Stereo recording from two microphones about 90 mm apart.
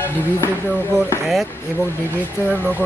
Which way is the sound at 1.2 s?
Centre (ahead or behind).